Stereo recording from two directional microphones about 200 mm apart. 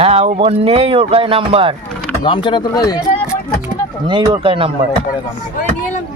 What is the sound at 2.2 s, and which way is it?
Speech, 25° left (ahead or behind).